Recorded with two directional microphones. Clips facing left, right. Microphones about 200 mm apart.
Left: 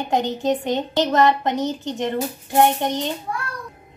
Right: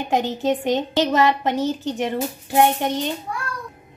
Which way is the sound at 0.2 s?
15° left (ahead or behind).